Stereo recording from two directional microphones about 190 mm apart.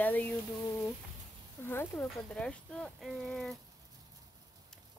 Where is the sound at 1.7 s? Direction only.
10° left (ahead or behind).